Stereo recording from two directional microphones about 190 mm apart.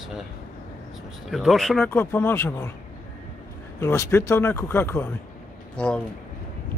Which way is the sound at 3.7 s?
15° left (ahead or behind).